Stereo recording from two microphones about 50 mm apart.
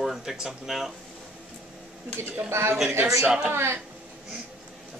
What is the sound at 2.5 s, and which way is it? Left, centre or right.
Speech, right.